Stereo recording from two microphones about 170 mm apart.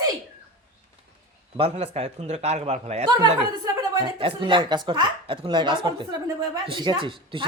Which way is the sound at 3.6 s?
20° right (ahead or behind).